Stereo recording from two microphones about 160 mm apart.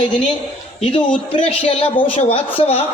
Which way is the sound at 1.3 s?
35° left (ahead or behind).